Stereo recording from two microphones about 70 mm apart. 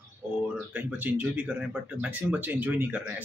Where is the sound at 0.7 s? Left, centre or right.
Right.